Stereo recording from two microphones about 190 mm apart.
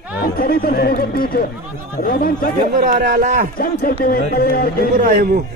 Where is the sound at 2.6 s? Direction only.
45° right (ahead or behind).